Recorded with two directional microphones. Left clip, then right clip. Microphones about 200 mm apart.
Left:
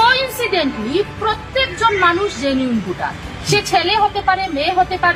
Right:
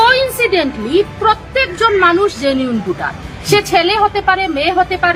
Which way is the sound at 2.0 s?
25° right (ahead or behind).